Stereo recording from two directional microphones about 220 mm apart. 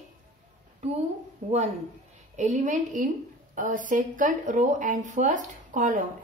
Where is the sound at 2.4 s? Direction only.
35° right (ahead or behind).